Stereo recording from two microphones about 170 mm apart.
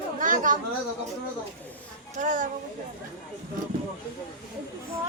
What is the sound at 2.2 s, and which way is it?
Speech, 50° right (ahead or behind).